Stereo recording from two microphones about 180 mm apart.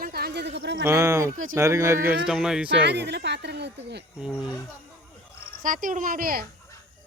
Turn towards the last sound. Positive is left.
turn(degrees=-55)  # may be behind; listen again after turning